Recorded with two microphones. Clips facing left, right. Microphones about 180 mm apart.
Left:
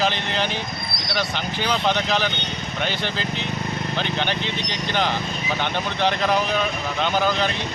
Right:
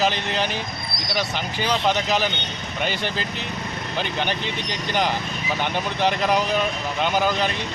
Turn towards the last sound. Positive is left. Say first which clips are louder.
# even
turn(degrees=-10)  # may be behind; listen again after turning